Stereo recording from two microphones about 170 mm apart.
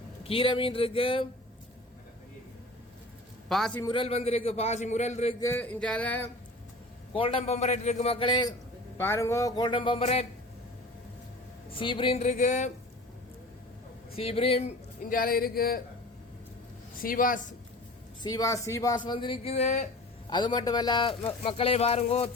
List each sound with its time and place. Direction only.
0.3 s a man's voice: 30° left (ahead or behind)
3.5 s a man's voice: centre (ahead or behind)
3.8 s a man's voice: 30° left (ahead or behind)
5.4 s a sound: 15° left (ahead or behind)
7.1 s a man's voice: 30° left (ahead or behind)
9.0 s speech: 15° left (ahead or behind); by 10.2 s 35° left (ahead or behind)
11.7 s a man's voice: 30° left (ahead or behind)
14.2 s a man's voice: 35° left (ahead or behind)
15.1 s speech: 60° left (ahead or behind)
17.0 s speech: 55° left (ahead or behind)
18.2 s speech: 20° left (ahead or behind); by 19.9 s 40° left (ahead or behind)
20.3 s speech: 25° left (ahead or behind)